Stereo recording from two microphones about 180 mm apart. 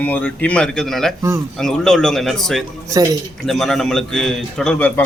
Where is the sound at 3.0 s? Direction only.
20° right (ahead or behind).